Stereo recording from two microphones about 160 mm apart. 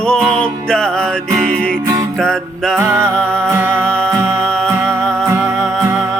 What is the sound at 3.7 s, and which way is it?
Music, 5° left (ahead or behind).